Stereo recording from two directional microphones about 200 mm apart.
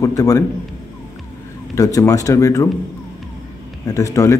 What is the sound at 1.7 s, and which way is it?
Speech, 15° left (ahead or behind).